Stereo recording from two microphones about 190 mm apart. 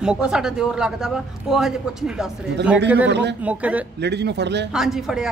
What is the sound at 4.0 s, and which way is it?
Speech, 65° right (ahead or behind).